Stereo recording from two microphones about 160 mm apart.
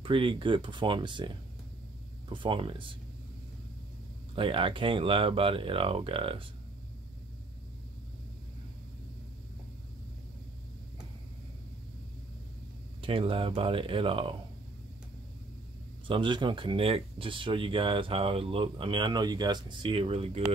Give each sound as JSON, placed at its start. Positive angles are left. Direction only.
{"t": 0.0, "sound": "speech", "side_deg": -30}
{"t": 4.4, "sound": "speech", "side_deg": -35}
{"t": 13.0, "sound": "speech", "side_deg": -35}
{"t": 16.1, "sound": "speech", "side_deg": -30}